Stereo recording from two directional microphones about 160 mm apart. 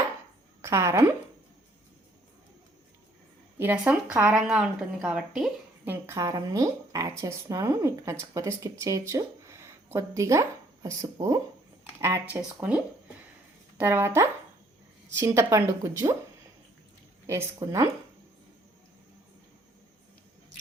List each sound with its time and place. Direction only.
0.6 s a woman's voice: 15° right (ahead or behind)
3.6 s speech: 10° right (ahead or behind)
5.8 s a woman's voice: 15° right (ahead or behind)
13.7 s a woman's voice: 10° right (ahead or behind)
17.2 s a woman's voice: 15° right (ahead or behind)